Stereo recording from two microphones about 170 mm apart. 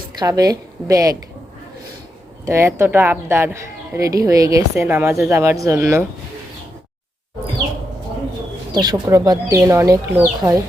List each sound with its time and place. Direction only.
0.2 s speech: 20° right (ahead or behind)
2.5 s speech: 15° right (ahead or behind)
8.7 s speech: 25° right (ahead or behind)